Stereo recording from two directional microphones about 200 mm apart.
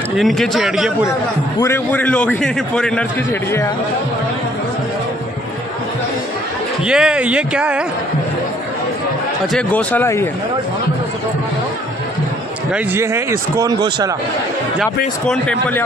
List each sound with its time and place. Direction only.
0.2 s speech: centre (ahead or behind)
1.6 s a man's voice: 10° left (ahead or behind)
6.8 s speech: 5° right (ahead or behind)
9.5 s a man's voice: 5° left (ahead or behind)
12.7 s speech: 10° right (ahead or behind)
14.8 s speech: 5° left (ahead or behind)